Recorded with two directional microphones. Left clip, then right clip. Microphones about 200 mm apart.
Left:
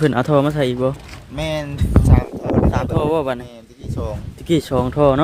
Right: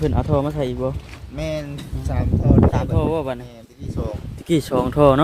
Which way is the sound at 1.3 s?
55° left (ahead or behind).